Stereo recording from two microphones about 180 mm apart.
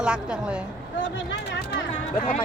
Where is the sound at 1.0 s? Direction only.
90° left.